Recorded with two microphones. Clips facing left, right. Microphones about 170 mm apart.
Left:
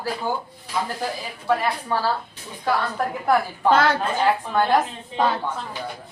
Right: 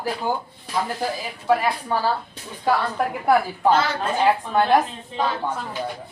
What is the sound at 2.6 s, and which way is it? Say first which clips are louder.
Speech: right 2 dB; 10° right (ahead or behind).